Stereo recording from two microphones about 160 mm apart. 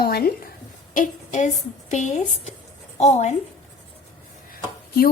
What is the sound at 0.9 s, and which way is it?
A woman's voice, 50° left (ahead or behind).